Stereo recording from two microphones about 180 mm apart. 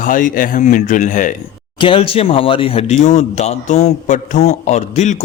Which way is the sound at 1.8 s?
30° left (ahead or behind).